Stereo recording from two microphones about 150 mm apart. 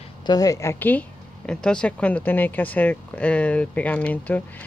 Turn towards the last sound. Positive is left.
turn(degrees=10)  # may be behind; listen again after turning